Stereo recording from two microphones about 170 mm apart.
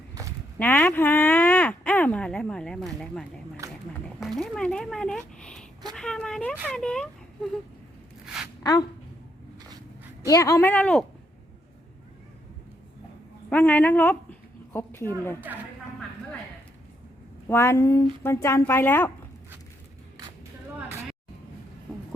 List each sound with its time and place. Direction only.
0.6 s speech: 10° left (ahead or behind)
3.6 s a sound: 20° right (ahead or behind)
4.2 s speech: centre (ahead or behind)
10.2 s speech: 20° left (ahead or behind)
13.5 s speech: 10° left (ahead or behind)
17.5 s speech: 15° left (ahead or behind)